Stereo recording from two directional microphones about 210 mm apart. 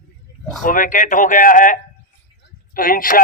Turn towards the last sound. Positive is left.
turn(degrees=40)  # may be behind; listen again after turning